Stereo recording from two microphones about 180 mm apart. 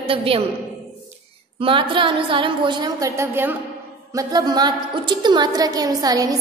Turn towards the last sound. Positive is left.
turn(degrees=-20)  # may be behind; listen again after turning